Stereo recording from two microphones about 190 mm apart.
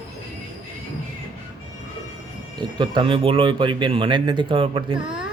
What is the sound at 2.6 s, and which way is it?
Speech, 25° right (ahead or behind).